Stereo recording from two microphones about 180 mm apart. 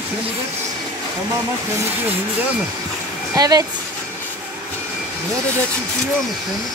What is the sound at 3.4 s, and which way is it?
Speech, 20° right (ahead or behind).